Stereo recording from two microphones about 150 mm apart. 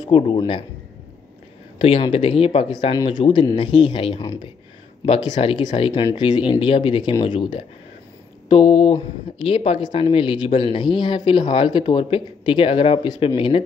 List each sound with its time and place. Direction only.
0.1 s speech: 35° left (ahead or behind)
1.8 s speech: 35° left (ahead or behind)
2.7 s speech: 30° left (ahead or behind)
5.3 s speech: 45° left (ahead or behind)